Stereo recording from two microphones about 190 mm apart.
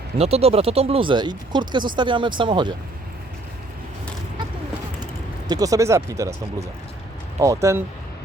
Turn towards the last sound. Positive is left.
turn(degrees=-15)  # may be behind; listen again after turning